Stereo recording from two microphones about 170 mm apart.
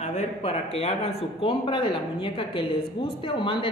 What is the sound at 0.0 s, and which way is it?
A man's voice, 40° left (ahead or behind).